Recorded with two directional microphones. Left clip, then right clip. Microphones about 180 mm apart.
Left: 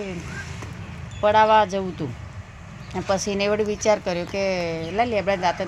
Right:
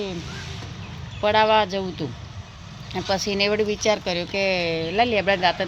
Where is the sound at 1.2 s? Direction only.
Centre (ahead or behind).